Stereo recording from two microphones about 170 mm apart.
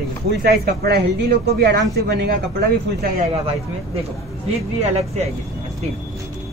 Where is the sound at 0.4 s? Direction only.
65° right (ahead or behind).